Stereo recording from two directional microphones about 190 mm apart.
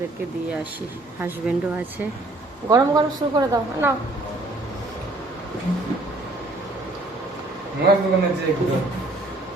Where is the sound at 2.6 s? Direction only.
20° right (ahead or behind).